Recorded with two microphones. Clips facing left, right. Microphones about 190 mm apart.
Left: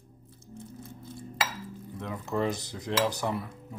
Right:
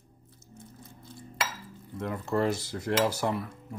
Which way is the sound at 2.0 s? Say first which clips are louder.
Right 4 dB; 10° right (ahead or behind).